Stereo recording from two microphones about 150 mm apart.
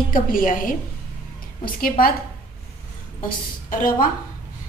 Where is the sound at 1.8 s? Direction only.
75° left (ahead or behind).